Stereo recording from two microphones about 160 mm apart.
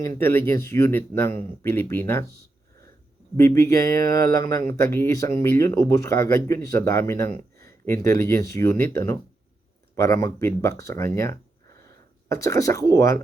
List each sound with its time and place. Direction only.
0.2 s speech: 15° left (ahead or behind)
3.3 s speech: 20° left (ahead or behind)